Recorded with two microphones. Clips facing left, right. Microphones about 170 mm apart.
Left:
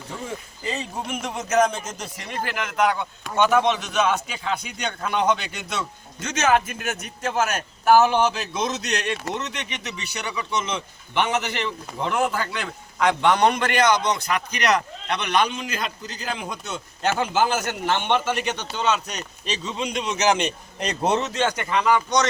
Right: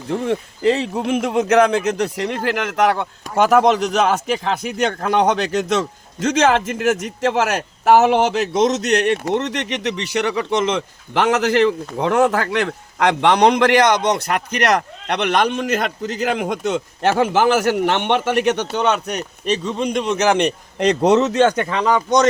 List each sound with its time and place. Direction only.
0.1 s a man's voice: 65° right (ahead or behind); by 21.2 s 90° right
21.2 s speech: 55° right (ahead or behind)